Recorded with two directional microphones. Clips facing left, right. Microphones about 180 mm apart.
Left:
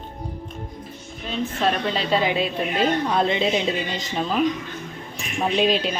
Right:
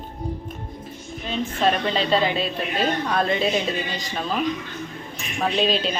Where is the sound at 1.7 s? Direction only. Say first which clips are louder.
Right 2 dB; centre (ahead or behind).